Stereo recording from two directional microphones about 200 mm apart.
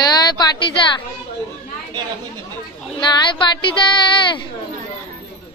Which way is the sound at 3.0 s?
25° left (ahead or behind).